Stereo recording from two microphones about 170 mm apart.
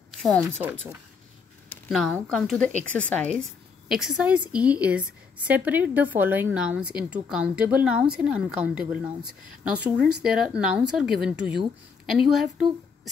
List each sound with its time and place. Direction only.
0.3 s a woman's voice: 15° right (ahead or behind)
1.9 s a woman's voice: centre (ahead or behind)
3.9 s a woman's voice: 5° right (ahead or behind)
10.3 s a woman's voice: 5° right (ahead or behind)